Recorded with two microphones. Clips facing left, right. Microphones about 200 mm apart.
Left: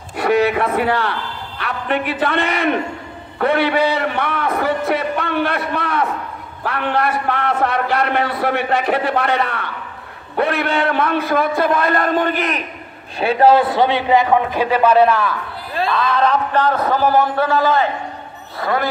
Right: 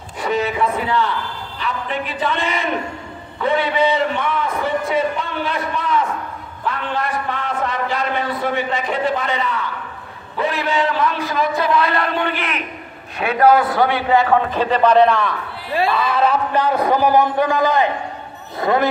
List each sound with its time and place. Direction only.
0.2 s a man's voice: 65° left (ahead or behind); by 12.6 s 40° left (ahead or behind)
13.2 s a man's voice: 30° left (ahead or behind); by 18.9 s 20° right (ahead or behind)